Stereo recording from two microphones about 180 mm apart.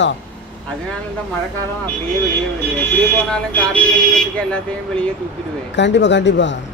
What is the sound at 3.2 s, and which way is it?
Speech, 5° left (ahead or behind).